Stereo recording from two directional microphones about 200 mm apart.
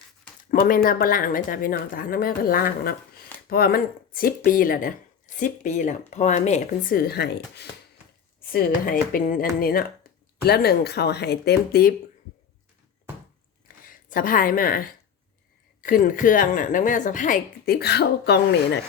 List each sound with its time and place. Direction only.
0.5 s speech: 45° left (ahead or behind)
13.7 s a sound: 45° left (ahead or behind)
15.8 s speech: 45° left (ahead or behind)